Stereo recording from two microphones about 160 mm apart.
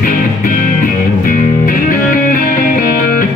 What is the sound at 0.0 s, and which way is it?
Music, 60° left (ahead or behind).